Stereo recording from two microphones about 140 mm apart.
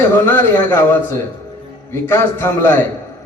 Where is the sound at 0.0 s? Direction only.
15° left (ahead or behind).